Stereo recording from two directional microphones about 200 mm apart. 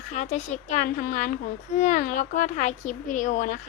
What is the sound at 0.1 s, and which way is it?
Speech, 40° left (ahead or behind).